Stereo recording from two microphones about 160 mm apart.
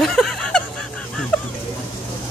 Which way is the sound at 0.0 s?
5° left (ahead or behind).